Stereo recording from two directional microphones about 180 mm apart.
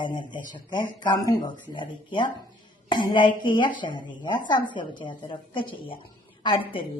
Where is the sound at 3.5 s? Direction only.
25° left (ahead or behind).